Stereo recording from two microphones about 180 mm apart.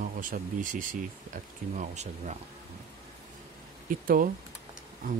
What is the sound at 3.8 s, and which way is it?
Speech, 50° right (ahead or behind).